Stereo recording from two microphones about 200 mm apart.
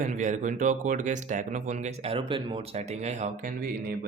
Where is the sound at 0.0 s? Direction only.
40° right (ahead or behind).